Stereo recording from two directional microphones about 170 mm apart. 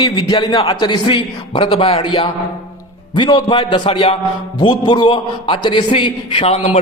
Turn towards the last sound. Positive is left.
turn(degrees=35)  # may be behind; listen again after turning